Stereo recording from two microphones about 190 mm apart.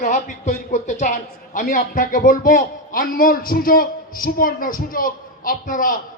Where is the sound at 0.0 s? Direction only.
40° left (ahead or behind).